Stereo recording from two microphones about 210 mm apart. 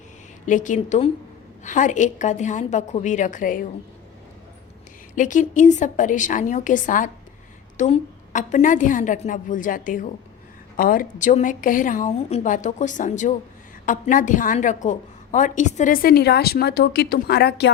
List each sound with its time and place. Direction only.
0.4 s a woman's voice: 35° left (ahead or behind)
5.1 s a woman's voice: 35° left (ahead or behind)